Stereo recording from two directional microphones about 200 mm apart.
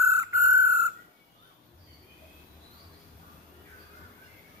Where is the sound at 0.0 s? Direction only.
15° right (ahead or behind).